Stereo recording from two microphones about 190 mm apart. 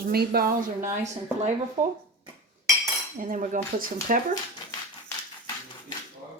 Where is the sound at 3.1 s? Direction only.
45° right (ahead or behind).